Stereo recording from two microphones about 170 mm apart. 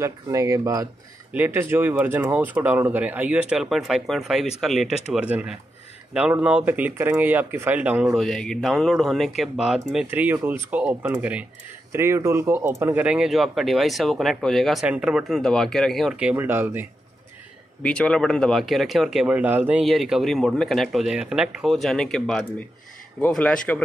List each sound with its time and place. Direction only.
0.0 s speech: 20° right (ahead or behind)
17.8 s speech: 5° left (ahead or behind); by 19.8 s 10° right (ahead or behind)
19.8 s speech: centre (ahead or behind)